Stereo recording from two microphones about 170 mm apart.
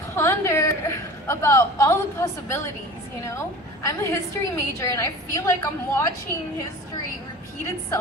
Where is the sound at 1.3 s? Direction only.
15° left (ahead or behind).